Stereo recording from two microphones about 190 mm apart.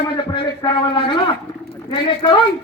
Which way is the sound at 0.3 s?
25° left (ahead or behind).